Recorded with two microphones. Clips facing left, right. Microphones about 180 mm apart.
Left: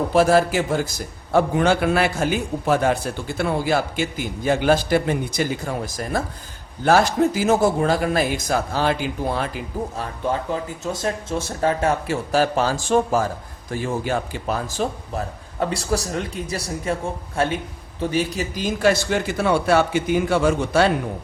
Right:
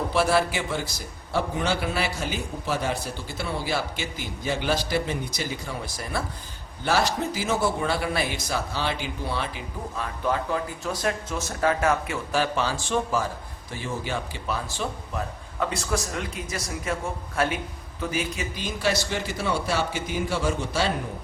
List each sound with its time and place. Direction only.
0.1 s a man's voice: 45° left (ahead or behind)
10.2 s speech: 25° left (ahead or behind)
18.3 s a man's voice: 45° left (ahead or behind); by 20.9 s 60° left (ahead or behind)